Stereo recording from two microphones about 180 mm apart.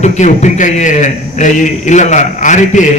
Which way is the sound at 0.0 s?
40° left (ahead or behind).